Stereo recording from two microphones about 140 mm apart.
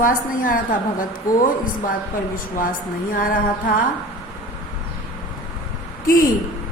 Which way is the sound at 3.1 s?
75° left (ahead or behind).